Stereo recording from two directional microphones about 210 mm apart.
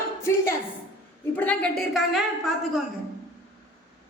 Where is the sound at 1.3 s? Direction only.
5° left (ahead or behind).